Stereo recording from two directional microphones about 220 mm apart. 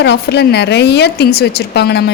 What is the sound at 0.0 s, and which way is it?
A woman's voice, 50° left (ahead or behind).